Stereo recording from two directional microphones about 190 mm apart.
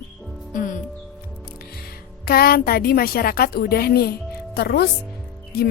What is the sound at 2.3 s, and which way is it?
Music, 55° left (ahead or behind).